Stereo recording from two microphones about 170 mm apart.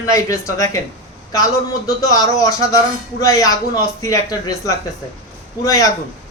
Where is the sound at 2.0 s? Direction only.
20° left (ahead or behind).